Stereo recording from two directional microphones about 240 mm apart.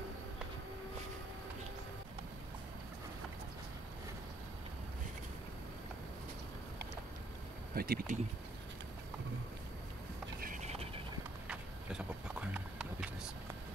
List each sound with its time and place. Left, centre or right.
7.7 s speech: right
10.4 s clip-clop: right
11.4 s clip-clop: centre